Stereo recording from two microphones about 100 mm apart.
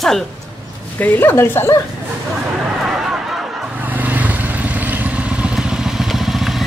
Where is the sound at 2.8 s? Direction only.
5° right (ahead or behind).